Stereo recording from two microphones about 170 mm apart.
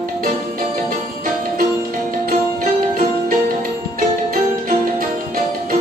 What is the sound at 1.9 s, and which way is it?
Music, 55° right (ahead or behind).